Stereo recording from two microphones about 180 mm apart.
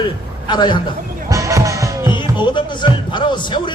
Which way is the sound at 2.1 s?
25° left (ahead or behind).